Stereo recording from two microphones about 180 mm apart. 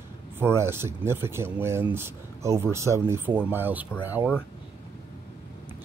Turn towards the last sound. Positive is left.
turn(degrees=-10)  # may be behind; listen again after turning